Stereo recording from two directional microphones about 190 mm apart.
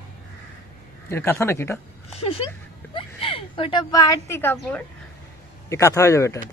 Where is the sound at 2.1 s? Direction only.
30° left (ahead or behind); by 6.4 s 15° left (ahead or behind).